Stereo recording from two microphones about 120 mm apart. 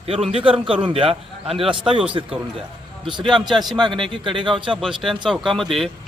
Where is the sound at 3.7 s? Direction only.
40° right (ahead or behind).